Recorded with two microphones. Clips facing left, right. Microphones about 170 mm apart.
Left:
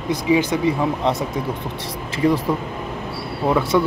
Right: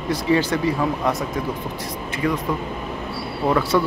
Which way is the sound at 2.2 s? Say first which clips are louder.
Left 5 dB; 20° left (ahead or behind).